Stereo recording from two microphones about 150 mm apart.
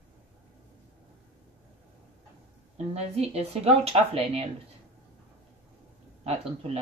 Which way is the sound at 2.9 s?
45° right (ahead or behind).